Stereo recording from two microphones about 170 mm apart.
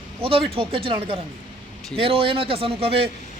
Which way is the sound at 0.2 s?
35° right (ahead or behind).